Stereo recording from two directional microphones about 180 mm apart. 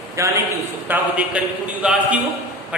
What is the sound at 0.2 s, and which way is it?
A man's voice, 15° right (ahead or behind).